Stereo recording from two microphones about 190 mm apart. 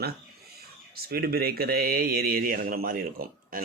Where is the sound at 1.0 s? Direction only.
55° right (ahead or behind).